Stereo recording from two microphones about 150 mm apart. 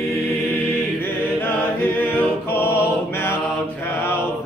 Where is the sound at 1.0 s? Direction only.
15° left (ahead or behind).